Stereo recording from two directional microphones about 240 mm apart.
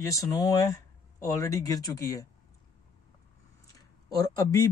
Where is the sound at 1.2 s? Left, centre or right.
Centre.